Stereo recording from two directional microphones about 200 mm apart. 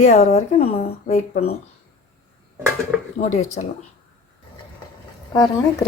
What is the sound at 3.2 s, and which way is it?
Speech, 35° left (ahead or behind).